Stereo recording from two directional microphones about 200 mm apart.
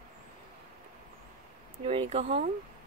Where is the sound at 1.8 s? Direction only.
30° right (ahead or behind).